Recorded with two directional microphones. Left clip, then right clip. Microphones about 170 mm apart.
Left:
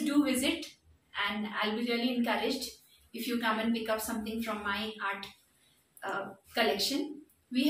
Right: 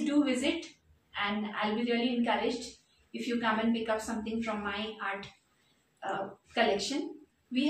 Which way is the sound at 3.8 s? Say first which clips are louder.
Right 1 dB; 15° right (ahead or behind).